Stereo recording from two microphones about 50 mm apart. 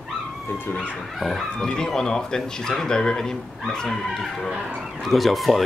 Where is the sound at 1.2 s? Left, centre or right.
Centre.